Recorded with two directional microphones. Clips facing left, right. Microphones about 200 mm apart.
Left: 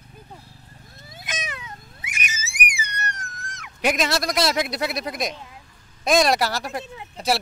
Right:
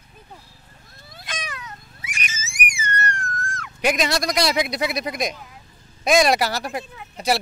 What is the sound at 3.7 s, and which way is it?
Speech, centre (ahead or behind).